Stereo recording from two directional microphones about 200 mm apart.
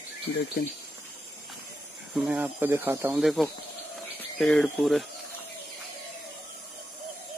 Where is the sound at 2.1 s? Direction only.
5° right (ahead or behind).